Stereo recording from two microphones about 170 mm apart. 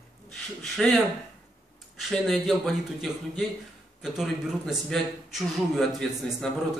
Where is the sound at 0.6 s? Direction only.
Centre (ahead or behind).